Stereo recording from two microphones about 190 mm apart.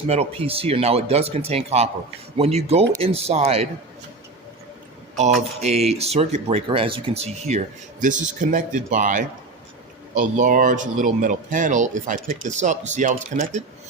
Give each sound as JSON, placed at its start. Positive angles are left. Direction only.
{"t": 0.1, "sound": "speech", "side_deg": -30}
{"t": 5.4, "sound": "a man's voice", "side_deg": -35}